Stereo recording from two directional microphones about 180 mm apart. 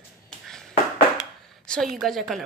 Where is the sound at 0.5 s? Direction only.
5° left (ahead or behind).